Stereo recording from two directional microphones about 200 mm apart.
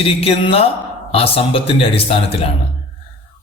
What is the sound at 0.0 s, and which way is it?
A man's voice, 30° left (ahead or behind).